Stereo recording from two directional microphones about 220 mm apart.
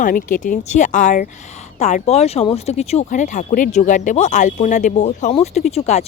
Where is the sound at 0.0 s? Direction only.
35° left (ahead or behind).